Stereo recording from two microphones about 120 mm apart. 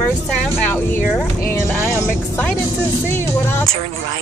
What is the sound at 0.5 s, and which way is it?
Speech, 20° left (ahead or behind).